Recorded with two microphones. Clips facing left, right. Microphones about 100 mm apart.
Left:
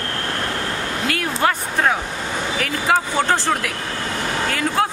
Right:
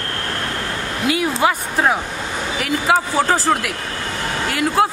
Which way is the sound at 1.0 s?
15° right (ahead or behind).